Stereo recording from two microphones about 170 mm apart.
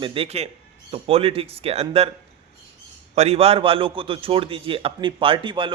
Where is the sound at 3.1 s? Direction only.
40° right (ahead or behind).